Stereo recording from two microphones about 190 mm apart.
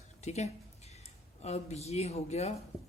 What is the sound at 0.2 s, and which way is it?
Speech, 35° left (ahead or behind).